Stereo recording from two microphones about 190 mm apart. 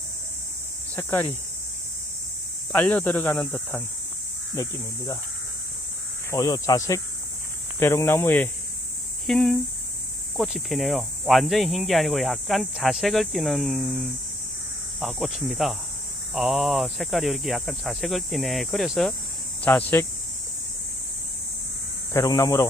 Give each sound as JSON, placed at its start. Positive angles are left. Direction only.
{"t": 0.9, "sound": "speech", "side_deg": 10}
{"t": 2.7, "sound": "speech", "side_deg": 10}
{"t": 6.3, "sound": "speech", "side_deg": 15}
{"t": 22.1, "sound": "speech", "side_deg": 15}